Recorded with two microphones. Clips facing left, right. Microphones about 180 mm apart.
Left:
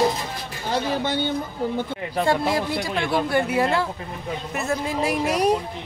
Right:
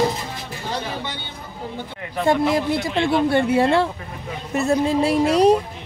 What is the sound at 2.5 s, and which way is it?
Speech, 20° right (ahead or behind).